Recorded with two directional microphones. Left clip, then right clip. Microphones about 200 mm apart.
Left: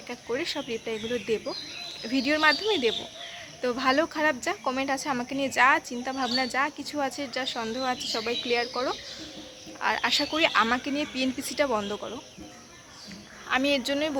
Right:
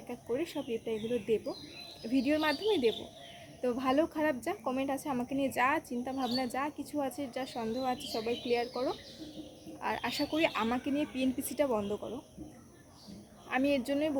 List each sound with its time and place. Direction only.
0.3 s speech: 5° right (ahead or behind)
9.8 s speech: 5° right (ahead or behind)
11.9 s speech: 15° left (ahead or behind)
13.5 s speech: 5° right (ahead or behind)